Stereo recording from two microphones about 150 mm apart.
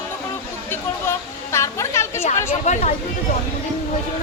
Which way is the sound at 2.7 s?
50° left (ahead or behind).